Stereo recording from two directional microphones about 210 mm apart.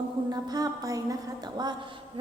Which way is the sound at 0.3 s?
20° right (ahead or behind).